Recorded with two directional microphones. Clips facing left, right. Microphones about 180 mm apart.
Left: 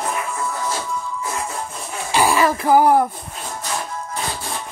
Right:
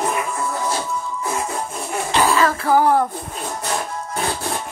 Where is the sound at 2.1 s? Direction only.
10° left (ahead or behind).